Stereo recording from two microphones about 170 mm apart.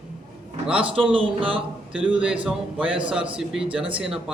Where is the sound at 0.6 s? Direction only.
5° right (ahead or behind).